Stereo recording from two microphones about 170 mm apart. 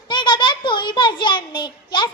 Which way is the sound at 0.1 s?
30° left (ahead or behind).